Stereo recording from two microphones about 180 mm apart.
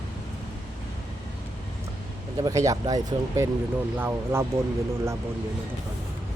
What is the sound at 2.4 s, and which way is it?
Speech, 20° right (ahead or behind).